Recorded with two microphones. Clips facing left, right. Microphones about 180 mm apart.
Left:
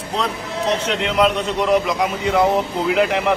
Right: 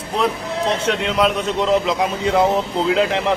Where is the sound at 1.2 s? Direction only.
20° right (ahead or behind).